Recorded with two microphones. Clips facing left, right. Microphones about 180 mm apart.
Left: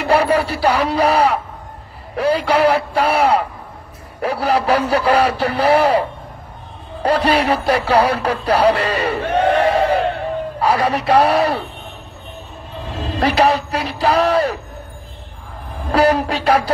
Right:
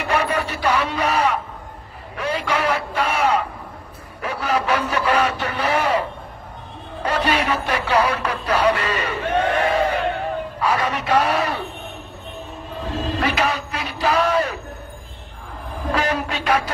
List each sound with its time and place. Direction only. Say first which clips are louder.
0.0 s music: left 6 dB; 35° left (ahead or behind)
2.1 s speech: left 7 dB; 35° left (ahead or behind)
7.0 s music: left 5 dB; 35° left (ahead or behind)
10.6 s speech: left 5 dB; 35° left (ahead or behind)
13.2 s a sound: left 9 dB; 35° left (ahead or behind)
15.9 s speech: left 8 dB; 35° left (ahead or behind)